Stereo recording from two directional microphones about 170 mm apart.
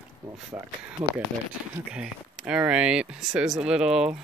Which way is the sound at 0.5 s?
20° right (ahead or behind).